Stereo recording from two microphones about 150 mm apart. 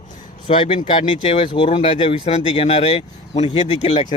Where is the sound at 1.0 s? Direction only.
40° left (ahead or behind).